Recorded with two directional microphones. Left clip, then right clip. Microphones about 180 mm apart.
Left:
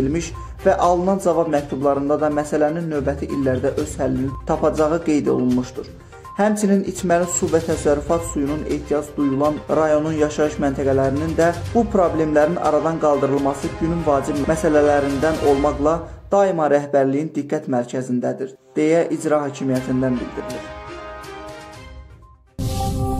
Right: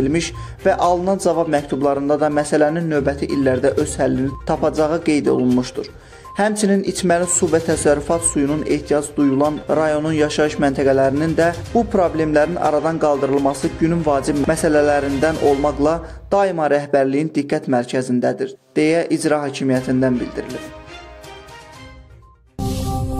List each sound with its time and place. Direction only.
0.1 s a man's voice: 30° right (ahead or behind)